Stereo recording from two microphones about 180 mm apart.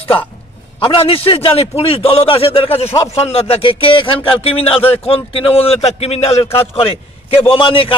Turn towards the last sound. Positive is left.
turn(degrees=30)  # may be behind; listen again after turning